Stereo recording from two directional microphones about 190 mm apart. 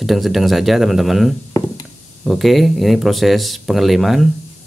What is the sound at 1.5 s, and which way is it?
Chop, 15° left (ahead or behind).